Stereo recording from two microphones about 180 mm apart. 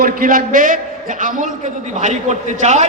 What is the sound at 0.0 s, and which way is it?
A man's voice, 50° right (ahead or behind).